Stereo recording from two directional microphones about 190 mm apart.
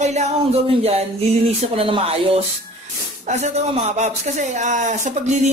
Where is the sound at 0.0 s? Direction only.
35° right (ahead or behind).